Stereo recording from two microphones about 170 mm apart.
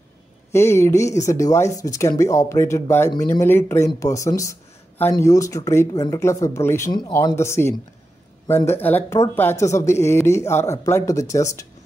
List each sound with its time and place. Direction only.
0.5 s speech: 15° left (ahead or behind)